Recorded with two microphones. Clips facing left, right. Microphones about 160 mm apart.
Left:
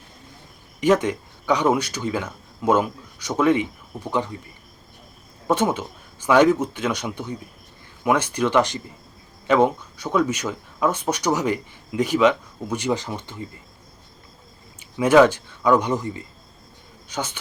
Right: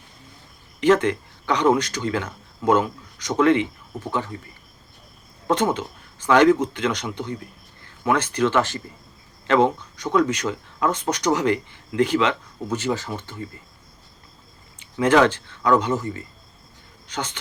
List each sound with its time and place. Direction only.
1.0 s speech: 10° left (ahead or behind)
5.5 s speech: 10° left (ahead or behind)
14.8 s speech: 10° left (ahead or behind)